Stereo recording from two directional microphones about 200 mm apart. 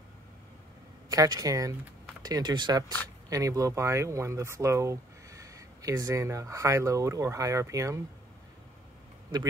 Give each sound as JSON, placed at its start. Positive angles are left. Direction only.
{"t": 1.0, "sound": "speech", "side_deg": -15}